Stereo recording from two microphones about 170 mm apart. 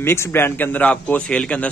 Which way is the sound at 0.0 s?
15° left (ahead or behind).